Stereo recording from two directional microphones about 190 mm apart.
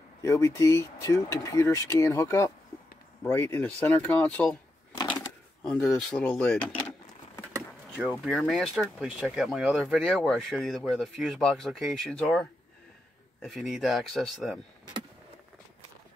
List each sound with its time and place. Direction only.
0.2 s speech: 15° left (ahead or behind)
5.6 s speech: 5° left (ahead or behind)
8.1 s speech: centre (ahead or behind)